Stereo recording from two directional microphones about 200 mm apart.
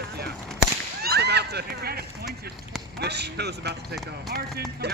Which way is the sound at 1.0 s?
55° right (ahead or behind).